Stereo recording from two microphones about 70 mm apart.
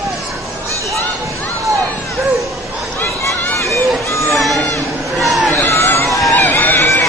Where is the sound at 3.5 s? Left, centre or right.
Left.